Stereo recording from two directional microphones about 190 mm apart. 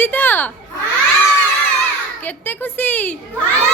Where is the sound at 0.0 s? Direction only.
10° left (ahead or behind).